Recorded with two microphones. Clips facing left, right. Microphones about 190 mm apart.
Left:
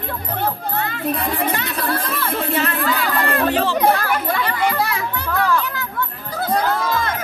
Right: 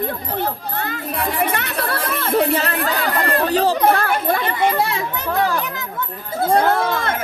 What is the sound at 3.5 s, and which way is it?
Chatter, 40° right (ahead or behind).